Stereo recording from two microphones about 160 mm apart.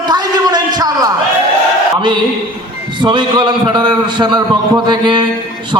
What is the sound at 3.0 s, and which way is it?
A man's voice, 30° right (ahead or behind).